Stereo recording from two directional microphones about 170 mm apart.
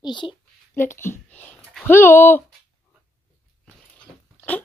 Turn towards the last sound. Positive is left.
turn(degrees=10)  # may be behind; listen again after turning